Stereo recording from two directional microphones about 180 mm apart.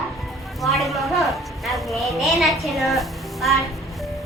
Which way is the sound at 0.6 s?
Centre (ahead or behind).